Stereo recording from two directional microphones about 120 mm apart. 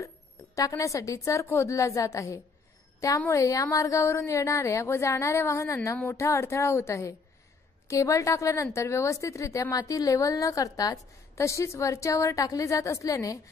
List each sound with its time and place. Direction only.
0.6 s a woman's voice: 30° left (ahead or behind)